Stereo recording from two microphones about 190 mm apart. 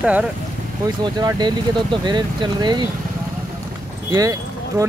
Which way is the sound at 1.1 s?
20° right (ahead or behind).